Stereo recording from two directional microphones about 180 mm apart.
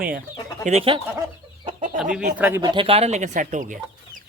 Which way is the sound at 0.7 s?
35° right (ahead or behind).